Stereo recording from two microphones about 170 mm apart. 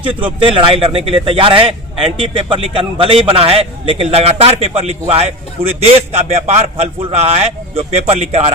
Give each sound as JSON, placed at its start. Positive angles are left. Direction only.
{"t": 0.3, "sound": "a man's voice", "side_deg": -30}